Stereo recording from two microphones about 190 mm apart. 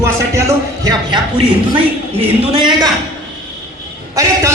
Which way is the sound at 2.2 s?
30° right (ahead or behind).